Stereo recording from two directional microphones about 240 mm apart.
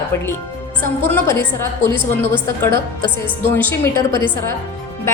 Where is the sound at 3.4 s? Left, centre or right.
Centre.